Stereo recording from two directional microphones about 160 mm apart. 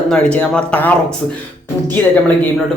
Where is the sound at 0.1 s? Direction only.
5° left (ahead or behind).